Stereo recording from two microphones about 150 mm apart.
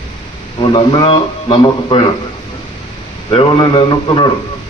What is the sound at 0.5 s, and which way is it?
Speech, 35° left (ahead or behind).